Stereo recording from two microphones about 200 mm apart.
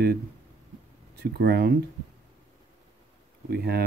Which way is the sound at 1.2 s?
55° right (ahead or behind).